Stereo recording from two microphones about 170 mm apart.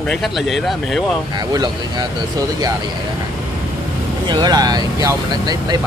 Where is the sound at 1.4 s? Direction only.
25° right (ahead or behind).